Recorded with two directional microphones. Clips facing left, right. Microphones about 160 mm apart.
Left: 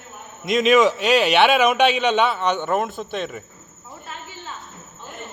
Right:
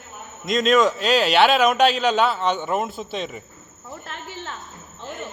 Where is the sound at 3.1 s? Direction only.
55° left (ahead or behind).